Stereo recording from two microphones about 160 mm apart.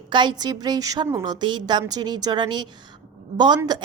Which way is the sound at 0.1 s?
30° right (ahead or behind).